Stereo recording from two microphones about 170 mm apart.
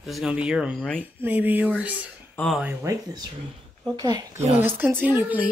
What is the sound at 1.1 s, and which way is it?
Speech, 10° right (ahead or behind).